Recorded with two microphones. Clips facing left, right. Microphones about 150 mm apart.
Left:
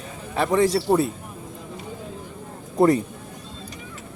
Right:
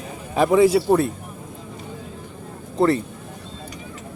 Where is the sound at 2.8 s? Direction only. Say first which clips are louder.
Left 1 dB; 15° left (ahead or behind).